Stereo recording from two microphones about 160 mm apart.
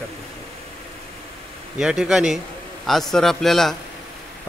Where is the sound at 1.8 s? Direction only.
5° right (ahead or behind).